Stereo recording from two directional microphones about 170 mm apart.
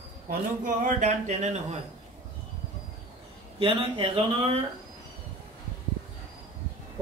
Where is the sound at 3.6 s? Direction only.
35° right (ahead or behind).